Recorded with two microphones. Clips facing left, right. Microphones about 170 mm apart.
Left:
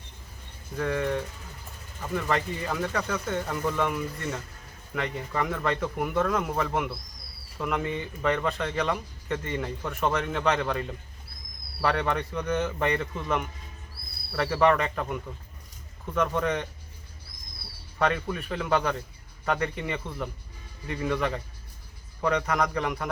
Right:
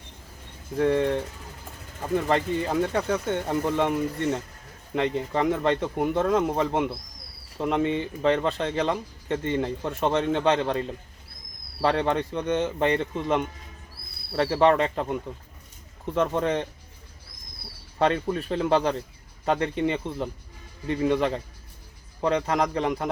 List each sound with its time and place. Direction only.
0.8 s speech: 30° right (ahead or behind)
18.0 s speech: 30° right (ahead or behind)